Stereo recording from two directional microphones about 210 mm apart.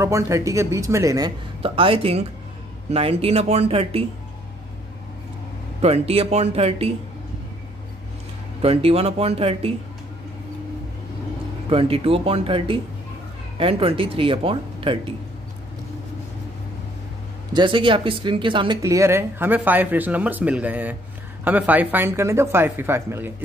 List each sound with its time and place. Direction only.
0.0 s speech: 15° right (ahead or behind)
5.8 s speech: 30° right (ahead or behind)
8.6 s speech: 30° right (ahead or behind)
11.7 s speech: 25° right (ahead or behind)
17.5 s speech: 20° right (ahead or behind)